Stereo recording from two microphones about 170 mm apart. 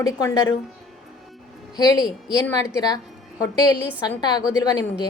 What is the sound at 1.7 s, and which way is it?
A woman's voice, 25° left (ahead or behind).